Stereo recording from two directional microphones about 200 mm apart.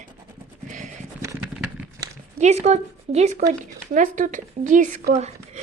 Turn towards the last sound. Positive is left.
turn(degrees=-35)  # may be behind; listen again after turning